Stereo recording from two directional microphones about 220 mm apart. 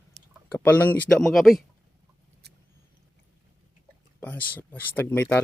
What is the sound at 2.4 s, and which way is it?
Vehicle, 45° right (ahead or behind).